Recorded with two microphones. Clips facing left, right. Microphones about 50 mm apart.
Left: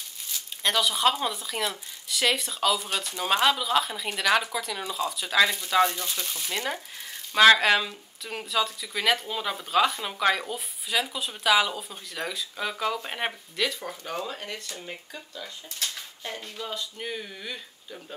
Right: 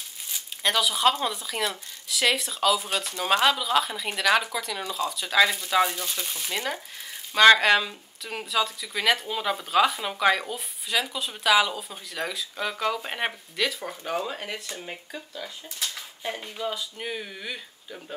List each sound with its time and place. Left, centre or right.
0.6 s speech: centre
16.3 s speech: centre